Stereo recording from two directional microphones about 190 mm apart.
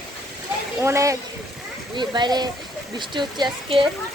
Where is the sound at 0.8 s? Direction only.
15° right (ahead or behind).